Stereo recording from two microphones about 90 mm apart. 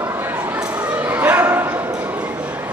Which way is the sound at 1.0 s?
20° right (ahead or behind).